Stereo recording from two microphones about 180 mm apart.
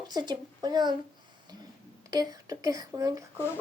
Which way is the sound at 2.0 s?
20° right (ahead or behind).